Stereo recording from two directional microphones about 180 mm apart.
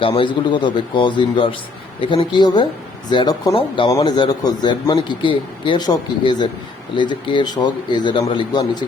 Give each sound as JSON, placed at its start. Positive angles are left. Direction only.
{"t": 0.0, "sound": "speech", "side_deg": 30}